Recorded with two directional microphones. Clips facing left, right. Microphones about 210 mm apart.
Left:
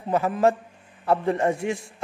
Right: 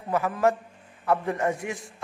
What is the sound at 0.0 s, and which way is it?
A man's voice, 25° left (ahead or behind).